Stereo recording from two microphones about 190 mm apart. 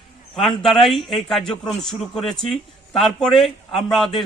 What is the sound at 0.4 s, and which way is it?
A man's voice, centre (ahead or behind).